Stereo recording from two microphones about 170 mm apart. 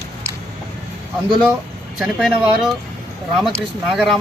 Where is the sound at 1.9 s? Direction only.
Centre (ahead or behind).